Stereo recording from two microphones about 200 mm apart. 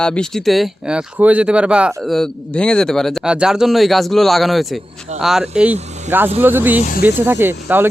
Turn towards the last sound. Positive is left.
turn(degrees=-10)  # may be behind; listen again after turning